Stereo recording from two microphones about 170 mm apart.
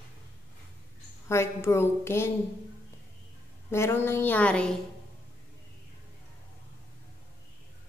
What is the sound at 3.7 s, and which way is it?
A woman's voice, 15° left (ahead or behind).